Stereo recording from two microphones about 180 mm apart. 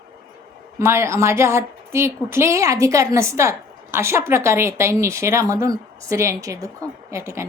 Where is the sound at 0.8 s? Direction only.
15° right (ahead or behind).